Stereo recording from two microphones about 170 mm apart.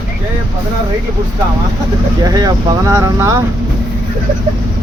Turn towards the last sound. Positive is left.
turn(degrees=-20)  # may be behind; listen again after turning